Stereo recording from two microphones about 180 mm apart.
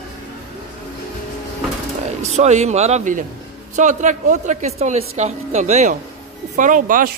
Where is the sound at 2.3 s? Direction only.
40° right (ahead or behind).